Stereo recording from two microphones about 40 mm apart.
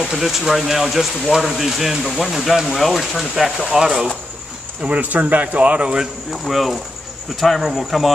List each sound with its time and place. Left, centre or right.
0.0 s speech: centre
3.7 s speech: centre
4.8 s speech: right
6.3 s speech: centre